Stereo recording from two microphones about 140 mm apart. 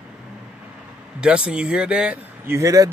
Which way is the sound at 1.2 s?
5° right (ahead or behind).